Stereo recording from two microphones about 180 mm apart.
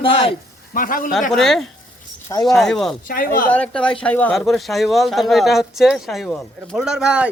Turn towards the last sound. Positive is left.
turn(degrees=-5)  # may be behind; listen again after turning